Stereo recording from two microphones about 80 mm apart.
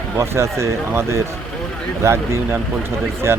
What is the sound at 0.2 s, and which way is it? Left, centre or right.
Speech, right.